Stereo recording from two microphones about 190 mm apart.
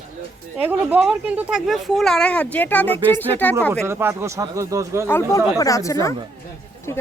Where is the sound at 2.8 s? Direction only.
30° right (ahead or behind).